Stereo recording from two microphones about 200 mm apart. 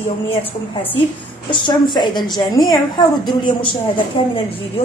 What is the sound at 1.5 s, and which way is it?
A woman's voice, 25° left (ahead or behind).